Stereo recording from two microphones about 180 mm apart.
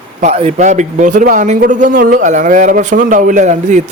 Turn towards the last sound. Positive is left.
turn(degrees=-40)  # may be behind; listen again after turning